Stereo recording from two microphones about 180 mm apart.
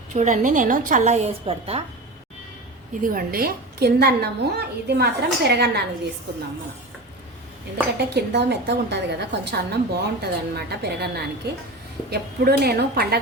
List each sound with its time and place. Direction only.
0.1 s a woman's voice: 40° right (ahead or behind)
3.0 s a woman's voice: 50° right (ahead or behind)
7.9 s a woman's voice: 65° right (ahead or behind)